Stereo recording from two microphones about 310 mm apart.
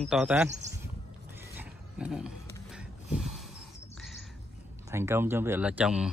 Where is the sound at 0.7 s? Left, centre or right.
Right.